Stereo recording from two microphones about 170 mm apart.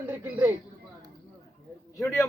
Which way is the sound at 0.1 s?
10° right (ahead or behind).